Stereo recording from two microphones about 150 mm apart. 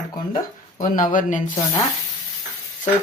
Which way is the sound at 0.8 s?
65° left (ahead or behind).